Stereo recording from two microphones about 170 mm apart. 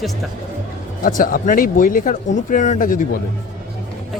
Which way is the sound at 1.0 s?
55° left (ahead or behind).